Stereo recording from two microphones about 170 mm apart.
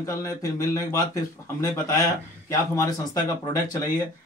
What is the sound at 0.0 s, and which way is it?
A man's voice, 20° left (ahead or behind).